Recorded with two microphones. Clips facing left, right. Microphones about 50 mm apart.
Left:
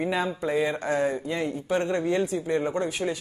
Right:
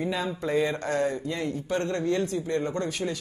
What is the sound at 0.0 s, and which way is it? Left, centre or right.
Speech, left.